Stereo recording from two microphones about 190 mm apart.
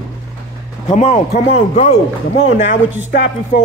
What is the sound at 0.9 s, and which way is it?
A man's voice, 35° left (ahead or behind).